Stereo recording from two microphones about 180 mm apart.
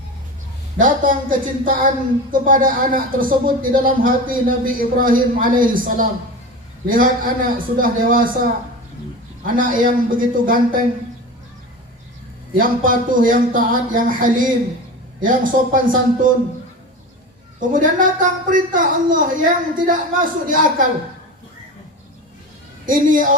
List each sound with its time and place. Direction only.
0.8 s speech: 45° right (ahead or behind)
9.6 s speech: 50° right (ahead or behind)
12.5 s speech: 50° right (ahead or behind)
17.6 s speech: 45° right (ahead or behind)
22.9 s speech: 50° right (ahead or behind)